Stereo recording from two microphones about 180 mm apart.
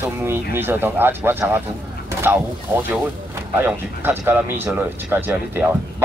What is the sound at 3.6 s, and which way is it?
Speech, 10° right (ahead or behind).